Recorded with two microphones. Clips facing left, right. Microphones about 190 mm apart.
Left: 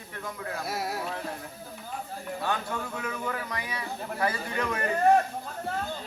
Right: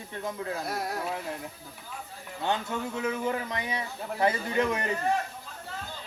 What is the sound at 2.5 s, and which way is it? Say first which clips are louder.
Speech: right 5 dB; 25° right (ahead or behind).